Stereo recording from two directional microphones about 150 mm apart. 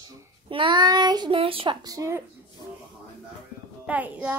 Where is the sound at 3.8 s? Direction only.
10° right (ahead or behind).